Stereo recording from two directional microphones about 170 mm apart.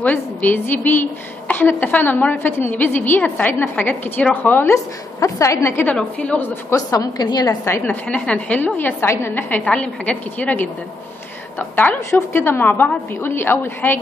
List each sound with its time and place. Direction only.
0.0 s a woman's voice: 10° left (ahead or behind)